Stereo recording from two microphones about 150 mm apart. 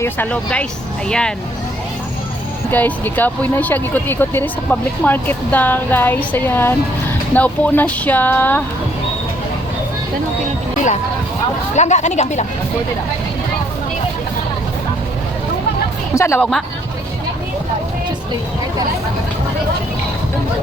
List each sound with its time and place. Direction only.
0.0 s speech: 10° left (ahead or behind)
2.6 s speech: 10° left (ahead or behind)
11.7 s speech: 50° left (ahead or behind)
16.1 s speech: 20° left (ahead or behind)
16.4 s speech: centre (ahead or behind)